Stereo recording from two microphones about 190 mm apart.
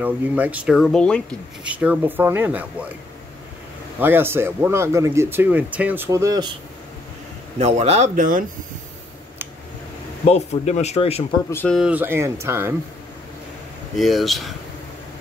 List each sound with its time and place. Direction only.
0.0 s speech: 5° right (ahead or behind)
1.6 s speech: 5° right (ahead or behind)
4.0 s speech: 10° right (ahead or behind)
7.5 s speech: 35° right (ahead or behind)
10.2 s speech: 35° left (ahead or behind)
11.5 s speech: 5° left (ahead or behind)
11.9 s speech: 10° right (ahead or behind)
13.9 s speech: centre (ahead or behind)